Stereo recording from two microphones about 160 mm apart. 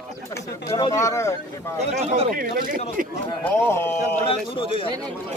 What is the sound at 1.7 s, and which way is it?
Speech, 45° right (ahead or behind).